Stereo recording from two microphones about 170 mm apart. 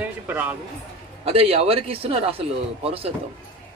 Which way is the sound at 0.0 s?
10° right (ahead or behind).